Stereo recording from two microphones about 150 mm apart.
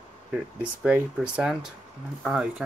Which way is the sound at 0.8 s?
10° right (ahead or behind).